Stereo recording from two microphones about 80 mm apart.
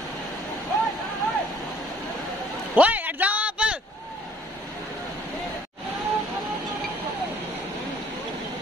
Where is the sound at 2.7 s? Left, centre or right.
Centre.